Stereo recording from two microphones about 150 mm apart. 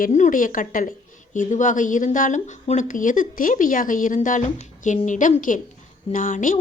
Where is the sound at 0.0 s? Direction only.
60° left (ahead or behind).